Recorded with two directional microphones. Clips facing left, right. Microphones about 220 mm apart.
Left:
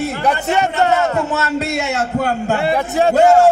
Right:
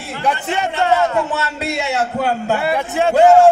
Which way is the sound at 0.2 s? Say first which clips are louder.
Even; 40° left (ahead or behind).